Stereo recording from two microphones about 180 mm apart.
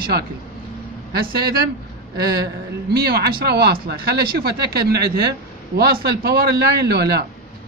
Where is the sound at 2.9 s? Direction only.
60° right (ahead or behind).